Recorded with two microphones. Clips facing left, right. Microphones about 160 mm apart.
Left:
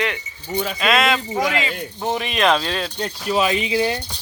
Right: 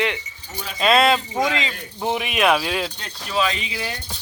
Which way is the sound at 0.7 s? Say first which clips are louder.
Right 4 dB; 30° right (ahead or behind).